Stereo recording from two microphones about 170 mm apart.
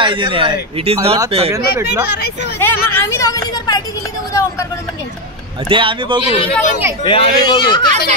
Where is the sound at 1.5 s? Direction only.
15° right (ahead or behind).